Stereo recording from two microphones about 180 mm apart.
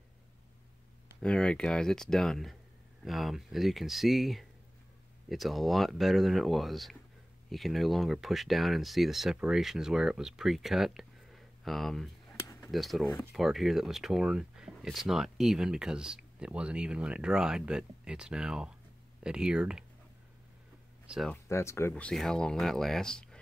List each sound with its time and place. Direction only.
1.2 s speech: 5° left (ahead or behind)
12.4 s a sound: 15° left (ahead or behind)
12.7 s speech: centre (ahead or behind)
21.1 s speech: centre (ahead or behind)
21.5 s speech: 15° left (ahead or behind)